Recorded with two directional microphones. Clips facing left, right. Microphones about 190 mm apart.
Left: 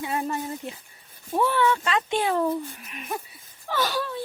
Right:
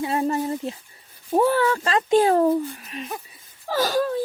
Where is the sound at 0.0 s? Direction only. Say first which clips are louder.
Right 6 dB; 35° right (ahead or behind).